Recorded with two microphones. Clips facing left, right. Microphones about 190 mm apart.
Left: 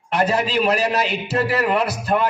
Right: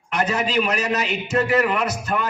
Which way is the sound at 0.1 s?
35° left (ahead or behind).